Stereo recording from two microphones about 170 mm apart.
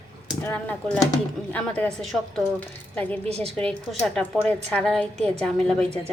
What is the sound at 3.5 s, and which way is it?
A woman's voice, 5° left (ahead or behind).